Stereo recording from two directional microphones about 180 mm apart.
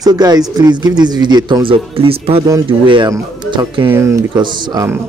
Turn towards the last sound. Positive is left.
turn(degrees=-20)  # may be behind; listen again after turning